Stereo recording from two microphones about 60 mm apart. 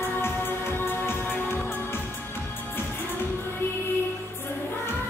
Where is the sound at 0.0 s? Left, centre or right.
Left.